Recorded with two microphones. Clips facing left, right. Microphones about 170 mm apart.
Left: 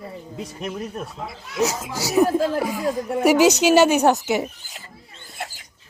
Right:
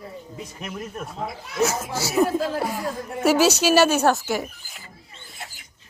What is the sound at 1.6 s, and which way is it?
Speech, 15° left (ahead or behind).